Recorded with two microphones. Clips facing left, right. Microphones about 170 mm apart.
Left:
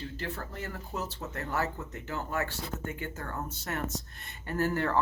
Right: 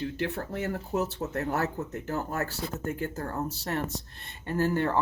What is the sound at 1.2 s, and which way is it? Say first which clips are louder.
Speech: right 4 dB; 45° right (ahead or behind).